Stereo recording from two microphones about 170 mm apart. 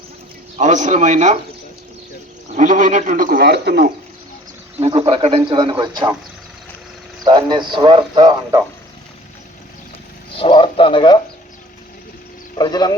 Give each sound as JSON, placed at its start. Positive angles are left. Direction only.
{"t": 0.6, "sound": "speech", "side_deg": -45}
{"t": 2.5, "sound": "speech", "side_deg": -50}
{"t": 4.8, "sound": "speech", "side_deg": -35}
{"t": 7.3, "sound": "speech", "side_deg": -25}
{"t": 10.3, "sound": "speech", "side_deg": 30}
{"t": 12.5, "sound": "speech", "side_deg": 25}